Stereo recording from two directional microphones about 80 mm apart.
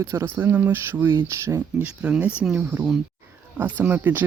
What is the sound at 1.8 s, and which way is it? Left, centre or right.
Speech, centre.